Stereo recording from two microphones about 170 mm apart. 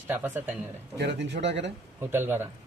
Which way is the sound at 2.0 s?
15° right (ahead or behind).